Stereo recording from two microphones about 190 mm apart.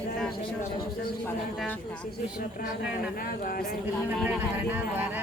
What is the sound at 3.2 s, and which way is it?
Speech, 50° left (ahead or behind).